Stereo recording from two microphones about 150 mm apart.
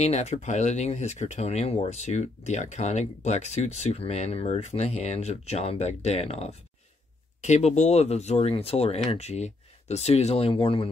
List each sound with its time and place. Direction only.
0.0 s speech: 50° left (ahead or behind)